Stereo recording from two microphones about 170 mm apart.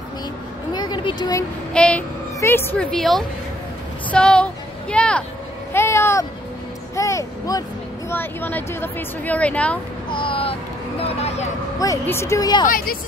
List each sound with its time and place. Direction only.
0.7 s a sound: 25° left (ahead or behind)
1.7 s a woman's voice: 5° left (ahead or behind)
5.7 s a sound: 15° left (ahead or behind)
7.0 s a woman's voice: 20° left (ahead or behind)
10.1 s speech: 30° left (ahead or behind)
11.8 s a woman's voice: 15° left (ahead or behind)
12.6 s a woman's voice: 60° left (ahead or behind)